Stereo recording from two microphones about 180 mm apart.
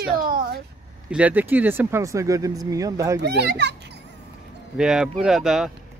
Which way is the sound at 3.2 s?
70° right (ahead or behind).